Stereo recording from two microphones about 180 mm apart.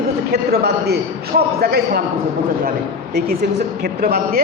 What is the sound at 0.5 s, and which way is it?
A man's voice, 60° right (ahead or behind).